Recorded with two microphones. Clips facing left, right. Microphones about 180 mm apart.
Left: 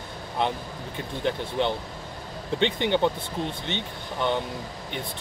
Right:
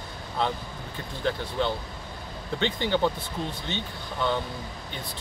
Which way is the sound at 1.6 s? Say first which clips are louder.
Left 3 dB; 20° left (ahead or behind).